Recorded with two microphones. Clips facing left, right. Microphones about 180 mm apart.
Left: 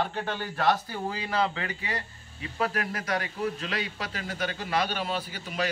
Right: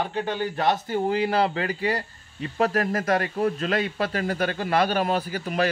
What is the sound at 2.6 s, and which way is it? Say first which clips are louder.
A man's voice: right 7 dB; 45° right (ahead or behind).